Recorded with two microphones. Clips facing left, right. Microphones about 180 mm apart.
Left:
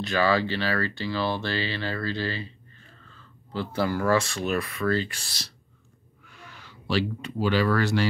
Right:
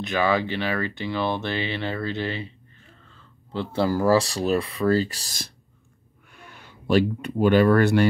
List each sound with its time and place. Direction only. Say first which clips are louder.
0.0 s speech: right 1 dB; 20° right (ahead or behind); by 5.5 s 45° right (ahead or behind)
6.7 s speech: right 6 dB; 50° right (ahead or behind)